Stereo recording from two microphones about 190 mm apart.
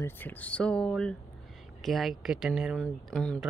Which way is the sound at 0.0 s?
10° left (ahead or behind).